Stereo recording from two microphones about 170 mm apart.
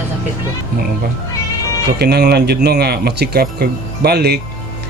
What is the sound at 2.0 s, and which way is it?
Speech, 75° right (ahead or behind).